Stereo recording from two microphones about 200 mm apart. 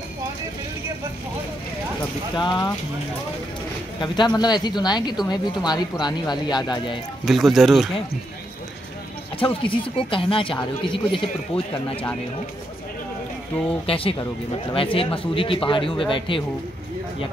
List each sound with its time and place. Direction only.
4.0 s speech: 20° left (ahead or behind)
7.2 s speech: centre (ahead or behind)
9.4 s speech: 25° left (ahead or behind)
13.8 s speech: 25° left (ahead or behind)